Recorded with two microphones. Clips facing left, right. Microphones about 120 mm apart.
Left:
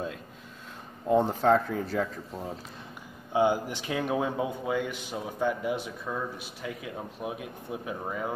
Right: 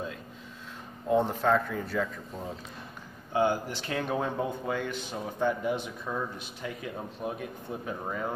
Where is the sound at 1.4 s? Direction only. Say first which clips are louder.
Left 3 dB; 35° left (ahead or behind).